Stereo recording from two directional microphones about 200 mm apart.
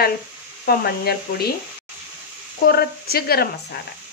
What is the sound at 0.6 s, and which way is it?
Speech, 50° left (ahead or behind).